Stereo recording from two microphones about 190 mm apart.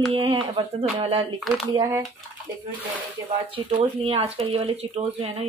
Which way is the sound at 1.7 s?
20° right (ahead or behind).